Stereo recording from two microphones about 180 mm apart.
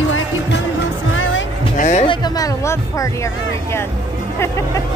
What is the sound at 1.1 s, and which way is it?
Music, 90° left.